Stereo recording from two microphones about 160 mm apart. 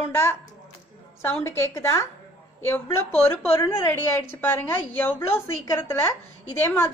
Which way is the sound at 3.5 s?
20° left (ahead or behind).